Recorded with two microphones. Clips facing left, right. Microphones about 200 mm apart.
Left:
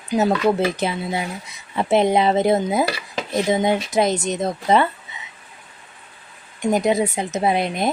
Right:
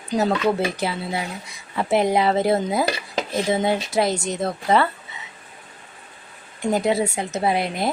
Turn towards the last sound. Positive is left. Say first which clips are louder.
# left 2 dB
turn(degrees=20)  # may be behind; listen again after turning